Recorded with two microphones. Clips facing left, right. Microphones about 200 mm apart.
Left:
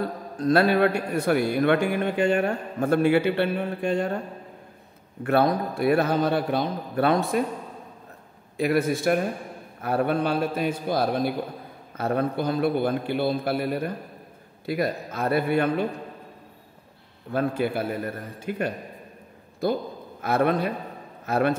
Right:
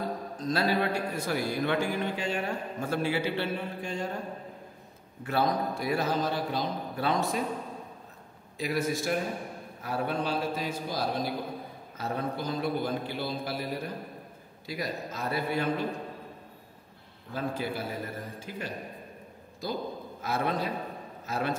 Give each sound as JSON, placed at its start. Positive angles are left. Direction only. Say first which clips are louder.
{"t": 0.4, "sound": "a man's voice", "louder": "left 9 dB", "side_deg": 60}
{"t": 5.2, "sound": "a man's voice", "louder": "left 6 dB", "side_deg": 60}
{"t": 8.5, "sound": "a man's voice", "louder": "left 7 dB", "side_deg": 60}
{"t": 17.3, "sound": "a man's voice", "louder": "left 8 dB", "side_deg": 60}